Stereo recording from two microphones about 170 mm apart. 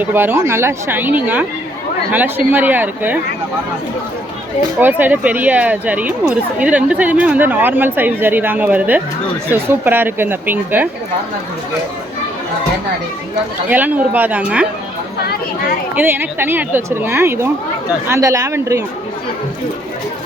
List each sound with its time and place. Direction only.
0.0 s speech: 10° right (ahead or behind)
2.5 s speech: 10° right (ahead or behind)
4.8 s speech: 10° right (ahead or behind)
13.7 s speech: 10° right (ahead or behind)
16.0 s speech: 10° right (ahead or behind)